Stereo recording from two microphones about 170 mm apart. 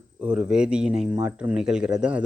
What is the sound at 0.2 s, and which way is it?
A man's voice, 5° right (ahead or behind).